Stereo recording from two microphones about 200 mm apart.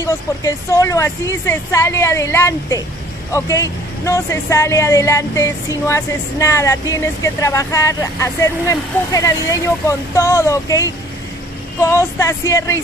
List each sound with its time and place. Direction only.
0.0 s speech: 15° left (ahead or behind)